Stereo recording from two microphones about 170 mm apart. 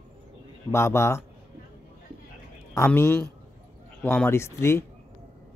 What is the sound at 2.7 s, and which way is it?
Speech, 15° left (ahead or behind).